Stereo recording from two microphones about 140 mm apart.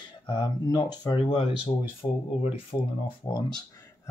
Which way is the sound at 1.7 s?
50° left (ahead or behind).